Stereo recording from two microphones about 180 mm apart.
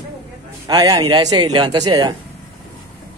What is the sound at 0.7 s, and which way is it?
A man's voice, 20° right (ahead or behind).